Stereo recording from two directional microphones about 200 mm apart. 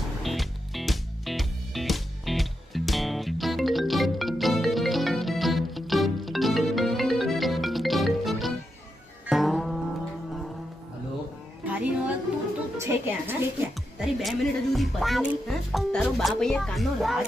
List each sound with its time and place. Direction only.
0.2 s music: centre (ahead or behind)
11.6 s music: 5° right (ahead or behind)
13.9 s a woman's voice: centre (ahead or behind)